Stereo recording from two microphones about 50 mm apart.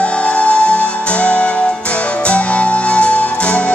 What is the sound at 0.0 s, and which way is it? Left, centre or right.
Music, left.